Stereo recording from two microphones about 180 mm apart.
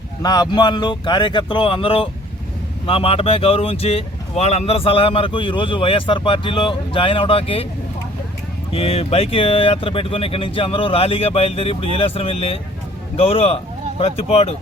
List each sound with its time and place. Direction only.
0.2 s speech: 20° left (ahead or behind)
8.7 s speech: 35° left (ahead or behind)